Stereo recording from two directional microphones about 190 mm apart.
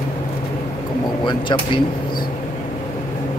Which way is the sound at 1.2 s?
25° left (ahead or behind).